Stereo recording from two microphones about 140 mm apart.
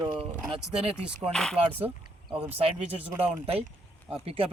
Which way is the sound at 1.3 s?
5° left (ahead or behind).